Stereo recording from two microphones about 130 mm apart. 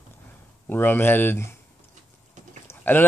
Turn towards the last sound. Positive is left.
turn(degrees=15)  # may be behind; listen again after turning